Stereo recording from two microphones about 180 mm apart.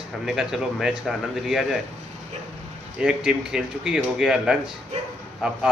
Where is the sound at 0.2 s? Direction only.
5° right (ahead or behind).